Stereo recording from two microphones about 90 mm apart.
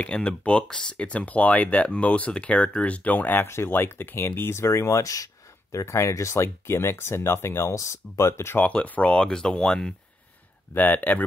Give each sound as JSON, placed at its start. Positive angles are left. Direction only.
{"t": 0.0, "sound": "speech", "side_deg": 10}
{"t": 8.6, "sound": "speech", "side_deg": 15}
{"t": 10.7, "sound": "speech", "side_deg": 20}